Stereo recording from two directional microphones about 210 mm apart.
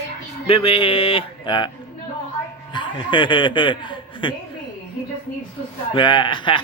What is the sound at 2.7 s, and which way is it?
A man's voice, 20° left (ahead or behind).